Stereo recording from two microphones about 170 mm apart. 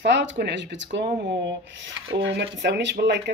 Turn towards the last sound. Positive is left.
turn(degrees=-90)